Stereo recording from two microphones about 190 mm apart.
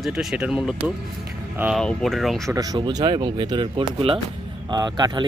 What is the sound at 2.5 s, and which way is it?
Speech, 20° right (ahead or behind).